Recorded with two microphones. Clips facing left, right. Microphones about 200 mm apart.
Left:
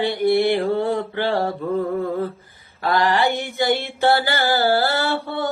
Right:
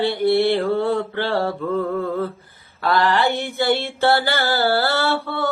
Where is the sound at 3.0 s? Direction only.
15° left (ahead or behind).